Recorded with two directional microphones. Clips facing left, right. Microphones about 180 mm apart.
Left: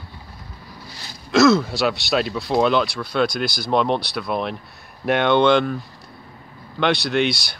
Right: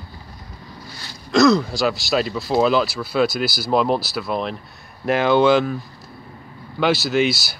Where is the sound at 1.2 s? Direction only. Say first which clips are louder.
Even; centre (ahead or behind).